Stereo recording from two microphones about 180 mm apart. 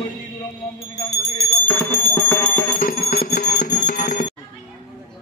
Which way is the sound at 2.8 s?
50° left (ahead or behind).